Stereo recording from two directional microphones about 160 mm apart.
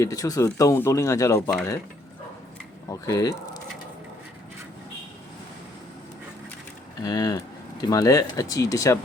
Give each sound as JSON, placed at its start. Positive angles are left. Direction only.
{"t": 0.0, "sound": "speech", "side_deg": 20}
{"t": 1.4, "sound": "speech", "side_deg": 5}
{"t": 2.9, "sound": "speech", "side_deg": 25}
{"t": 7.0, "sound": "speech", "side_deg": 25}